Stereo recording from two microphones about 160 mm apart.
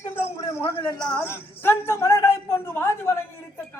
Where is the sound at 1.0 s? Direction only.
15° left (ahead or behind).